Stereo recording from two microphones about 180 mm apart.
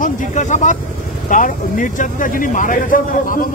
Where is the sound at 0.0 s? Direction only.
45° left (ahead or behind).